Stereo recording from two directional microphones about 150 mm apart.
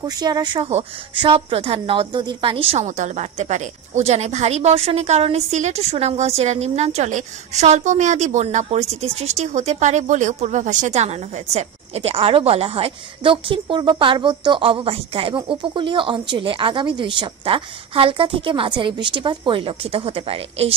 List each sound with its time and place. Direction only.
0.0 s a woman's voice: 25° right (ahead or behind)